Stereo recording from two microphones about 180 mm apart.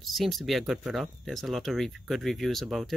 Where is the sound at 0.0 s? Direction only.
Centre (ahead or behind).